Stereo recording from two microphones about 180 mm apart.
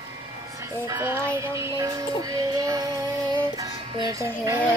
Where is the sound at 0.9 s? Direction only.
15° right (ahead or behind).